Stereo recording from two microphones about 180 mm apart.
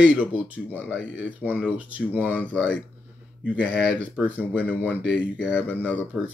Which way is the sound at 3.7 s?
65° left (ahead or behind).